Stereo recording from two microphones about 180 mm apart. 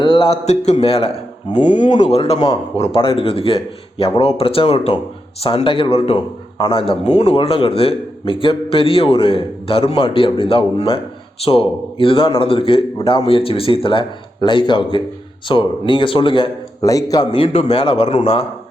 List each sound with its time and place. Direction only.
0.0 s speech: 30° left (ahead or behind)
1.6 s a man's voice: 40° left (ahead or behind)